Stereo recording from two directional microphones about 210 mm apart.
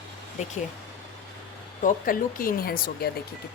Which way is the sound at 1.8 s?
40° left (ahead or behind).